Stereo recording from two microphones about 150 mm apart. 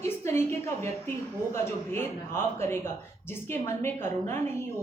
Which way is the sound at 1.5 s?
15° left (ahead or behind).